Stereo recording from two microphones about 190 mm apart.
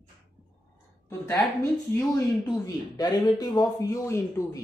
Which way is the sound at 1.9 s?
15° left (ahead or behind).